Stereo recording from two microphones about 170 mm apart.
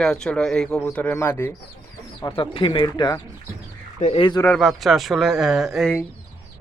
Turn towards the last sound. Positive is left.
turn(degrees=0)  # may be behind; listen again after turning